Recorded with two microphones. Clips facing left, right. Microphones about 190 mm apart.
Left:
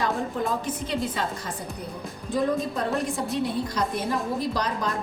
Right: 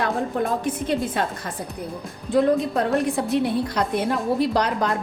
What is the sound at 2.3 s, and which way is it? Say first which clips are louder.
A woman's voice: right 6 dB; 65° right (ahead or behind).